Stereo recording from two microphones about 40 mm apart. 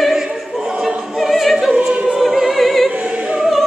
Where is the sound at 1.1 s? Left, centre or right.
Centre.